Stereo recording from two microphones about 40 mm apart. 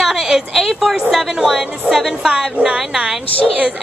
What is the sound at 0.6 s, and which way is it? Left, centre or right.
Music, centre.